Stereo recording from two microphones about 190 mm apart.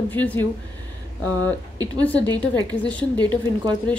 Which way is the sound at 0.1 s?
10° left (ahead or behind).